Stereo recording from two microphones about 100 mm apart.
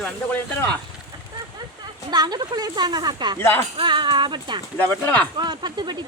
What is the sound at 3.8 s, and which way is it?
Speech, 55° right (ahead or behind).